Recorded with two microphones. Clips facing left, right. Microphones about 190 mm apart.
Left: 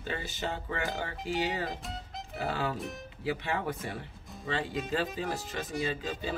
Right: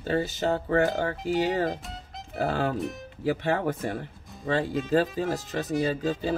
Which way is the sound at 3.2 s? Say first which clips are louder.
Right 7 dB; 45° right (ahead or behind).